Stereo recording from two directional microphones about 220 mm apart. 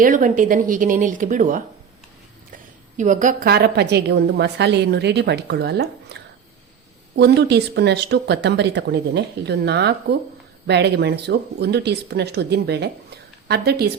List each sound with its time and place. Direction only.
0.0 s speech: 35° right (ahead or behind)
3.0 s speech: 35° right (ahead or behind)
6.1 s a sound: 50° right (ahead or behind)
7.2 s speech: 50° right (ahead or behind)